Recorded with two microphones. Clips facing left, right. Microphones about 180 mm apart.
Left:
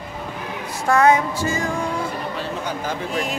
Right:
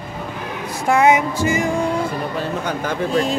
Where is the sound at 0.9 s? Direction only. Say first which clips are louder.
Right 1 dB; 20° right (ahead or behind).